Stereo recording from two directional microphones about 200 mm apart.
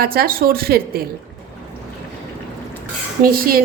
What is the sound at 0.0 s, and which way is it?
A woman's voice, 50° right (ahead or behind).